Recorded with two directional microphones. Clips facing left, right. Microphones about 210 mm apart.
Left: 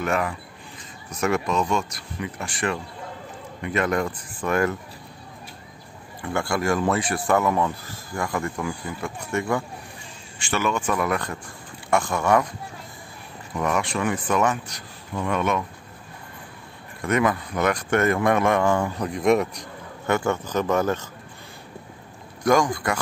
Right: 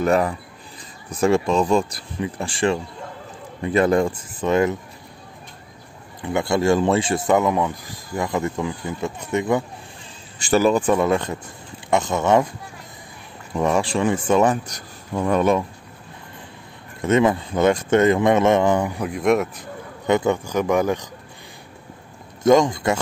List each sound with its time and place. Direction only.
0.0 s speech: 35° right (ahead or behind)
6.2 s speech: 20° right (ahead or behind)
10.4 s speech: 35° right (ahead or behind)
10.9 s speech: 25° right (ahead or behind)
13.6 s speech: 30° right (ahead or behind)
17.0 s speech: 25° right (ahead or behind)
19.0 s speech: centre (ahead or behind)
20.1 s speech: 15° right (ahead or behind)
22.4 s speech: 20° right (ahead or behind)